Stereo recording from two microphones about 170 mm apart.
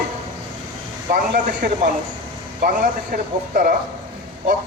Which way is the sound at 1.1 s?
50° right (ahead or behind).